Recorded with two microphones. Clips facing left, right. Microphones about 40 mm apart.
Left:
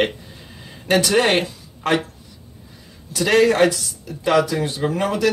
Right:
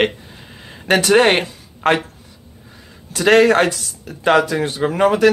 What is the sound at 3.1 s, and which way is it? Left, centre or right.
Speech, right.